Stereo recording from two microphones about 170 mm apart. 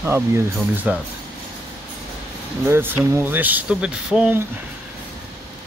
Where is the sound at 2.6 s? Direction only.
15° right (ahead or behind).